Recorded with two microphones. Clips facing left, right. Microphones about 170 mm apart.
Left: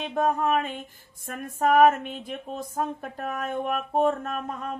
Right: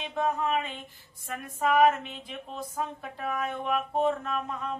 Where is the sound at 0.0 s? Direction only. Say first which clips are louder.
Left 4 dB; 50° left (ahead or behind).